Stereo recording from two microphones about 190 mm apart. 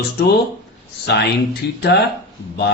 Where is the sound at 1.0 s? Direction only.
60° left (ahead or behind).